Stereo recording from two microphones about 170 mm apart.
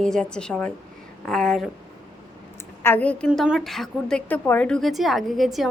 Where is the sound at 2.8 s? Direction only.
10° left (ahead or behind).